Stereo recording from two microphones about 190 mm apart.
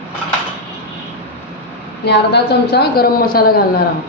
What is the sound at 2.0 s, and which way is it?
A woman's voice, 60° left (ahead or behind).